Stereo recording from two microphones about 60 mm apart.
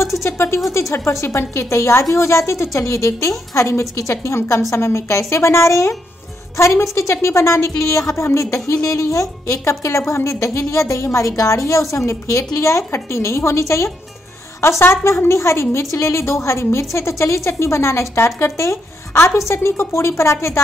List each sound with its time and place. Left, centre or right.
0.0 s a sound: left
0.7 s a woman's voice: left
14.6 s a woman's voice: left